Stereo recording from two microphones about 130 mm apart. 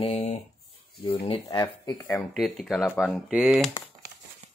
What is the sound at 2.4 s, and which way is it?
Speech, centre (ahead or behind).